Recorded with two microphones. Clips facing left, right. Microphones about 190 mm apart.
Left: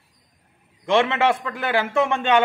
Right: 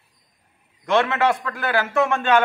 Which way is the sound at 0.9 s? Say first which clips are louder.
Even; 20° left (ahead or behind).